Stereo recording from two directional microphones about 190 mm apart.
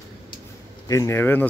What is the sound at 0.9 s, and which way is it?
Speech, 15° left (ahead or behind).